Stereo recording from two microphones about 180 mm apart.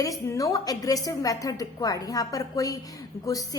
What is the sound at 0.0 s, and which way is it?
A woman's voice, 20° left (ahead or behind).